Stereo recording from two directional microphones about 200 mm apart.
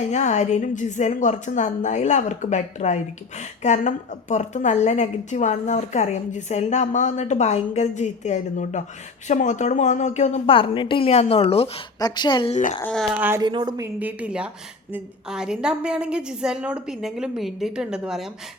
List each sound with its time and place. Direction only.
0.0 s a woman's voice: 35° left (ahead or behind)
12.8 s a woman's voice: 5° left (ahead or behind)
13.1 s speech: 10° right (ahead or behind)
13.4 s a woman's voice: 20° right (ahead or behind); by 18.3 s 5° right (ahead or behind)